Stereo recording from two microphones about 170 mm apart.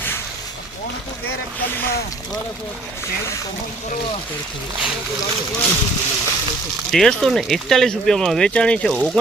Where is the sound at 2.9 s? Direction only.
15° left (ahead or behind).